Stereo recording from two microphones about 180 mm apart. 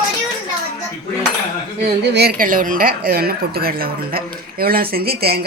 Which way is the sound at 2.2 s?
55° right (ahead or behind).